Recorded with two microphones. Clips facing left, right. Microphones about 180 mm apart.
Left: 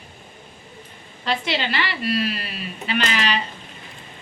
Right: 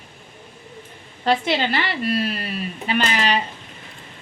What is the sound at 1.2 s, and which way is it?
A woman's voice, 50° right (ahead or behind).